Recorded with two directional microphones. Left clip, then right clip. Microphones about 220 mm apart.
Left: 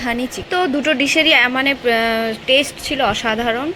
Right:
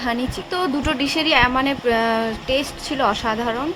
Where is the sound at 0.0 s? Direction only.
5° left (ahead or behind).